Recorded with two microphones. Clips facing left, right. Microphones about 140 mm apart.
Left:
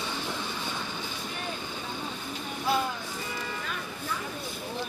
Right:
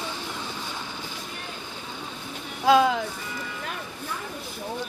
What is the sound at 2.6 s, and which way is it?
Music, 90° right.